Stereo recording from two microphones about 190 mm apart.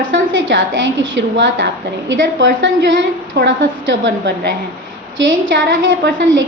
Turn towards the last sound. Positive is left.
turn(degrees=-75)  # may be behind; listen again after turning